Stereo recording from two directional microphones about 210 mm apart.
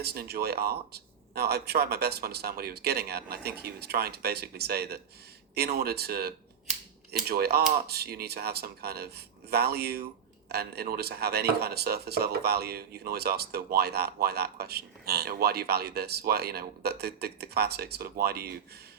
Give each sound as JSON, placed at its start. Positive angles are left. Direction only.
{"t": 0.0, "sound": "speech", "side_deg": -50}